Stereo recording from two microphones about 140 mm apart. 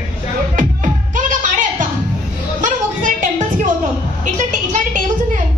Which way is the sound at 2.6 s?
65° right (ahead or behind).